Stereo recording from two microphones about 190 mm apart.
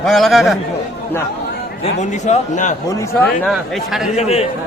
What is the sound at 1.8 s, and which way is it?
Speech, 40° left (ahead or behind).